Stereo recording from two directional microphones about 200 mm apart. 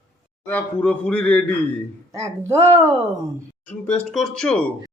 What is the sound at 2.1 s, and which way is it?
Speech, 15° right (ahead or behind).